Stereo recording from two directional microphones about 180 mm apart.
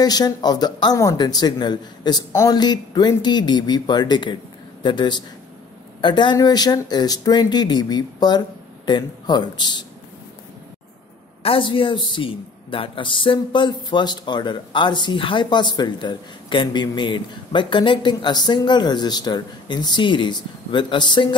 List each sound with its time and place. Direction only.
0.0 s speech: 20° left (ahead or behind)
11.4 s speech: 30° left (ahead or behind)